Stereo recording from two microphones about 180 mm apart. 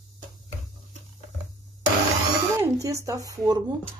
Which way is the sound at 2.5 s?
15° right (ahead or behind).